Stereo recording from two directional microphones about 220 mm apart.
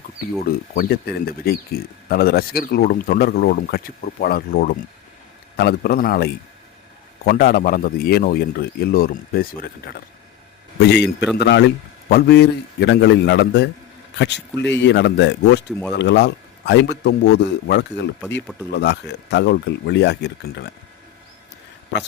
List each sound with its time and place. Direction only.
0.7 s a man's voice: 45° left (ahead or behind)